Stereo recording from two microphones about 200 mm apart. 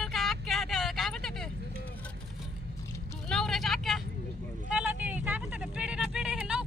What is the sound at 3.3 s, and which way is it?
Vehicle, centre (ahead or behind).